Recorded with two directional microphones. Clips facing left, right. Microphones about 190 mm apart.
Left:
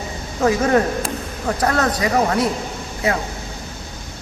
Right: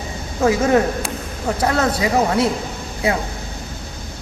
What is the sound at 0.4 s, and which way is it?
Speech, 10° right (ahead or behind).